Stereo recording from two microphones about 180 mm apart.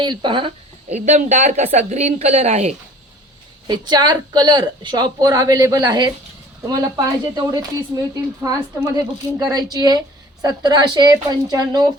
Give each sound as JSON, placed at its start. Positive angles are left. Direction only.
{"t": 0.0, "sound": "speech", "side_deg": -25}
{"t": 3.7, "sound": "a woman's voice", "side_deg": -25}